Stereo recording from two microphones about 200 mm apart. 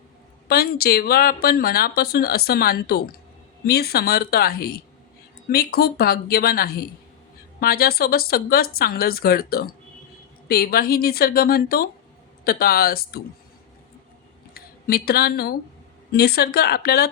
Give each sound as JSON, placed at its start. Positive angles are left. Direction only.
{"t": 0.4, "sound": "speech", "side_deg": 50}
{"t": 14.5, "sound": "speech", "side_deg": 50}